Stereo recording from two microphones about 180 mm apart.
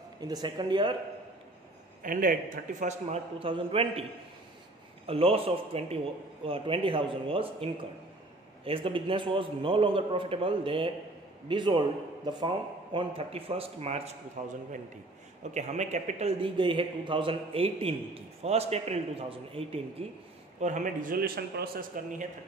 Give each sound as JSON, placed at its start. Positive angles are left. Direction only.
{"t": 0.2, "sound": "a man's voice", "side_deg": -25}
{"t": 2.0, "sound": "a man's voice", "side_deg": -50}
{"t": 5.0, "sound": "a man's voice", "side_deg": -30}
{"t": 20.6, "sound": "a man's voice", "side_deg": -45}